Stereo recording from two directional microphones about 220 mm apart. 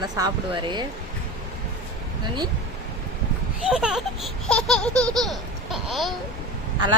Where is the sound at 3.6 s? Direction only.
5° right (ahead or behind).